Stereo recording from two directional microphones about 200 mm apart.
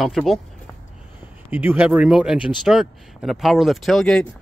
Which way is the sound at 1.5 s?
10° right (ahead or behind).